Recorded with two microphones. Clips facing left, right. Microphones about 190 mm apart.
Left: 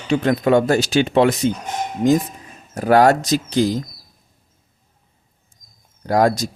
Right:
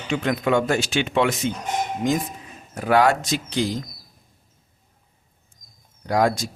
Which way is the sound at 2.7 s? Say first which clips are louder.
Left 5 dB; 40° left (ahead or behind).